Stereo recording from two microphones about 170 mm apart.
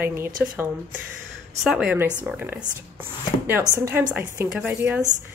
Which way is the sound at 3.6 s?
15° right (ahead or behind).